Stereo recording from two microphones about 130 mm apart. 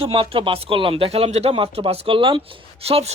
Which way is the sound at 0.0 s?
45° right (ahead or behind).